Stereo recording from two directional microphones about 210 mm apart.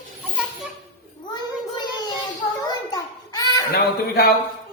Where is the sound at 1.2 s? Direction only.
20° left (ahead or behind).